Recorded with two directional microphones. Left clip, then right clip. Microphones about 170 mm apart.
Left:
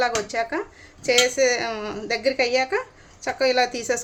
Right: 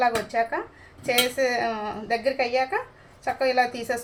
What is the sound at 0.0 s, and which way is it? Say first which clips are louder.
A woman's voice: even; 40° left (ahead or behind).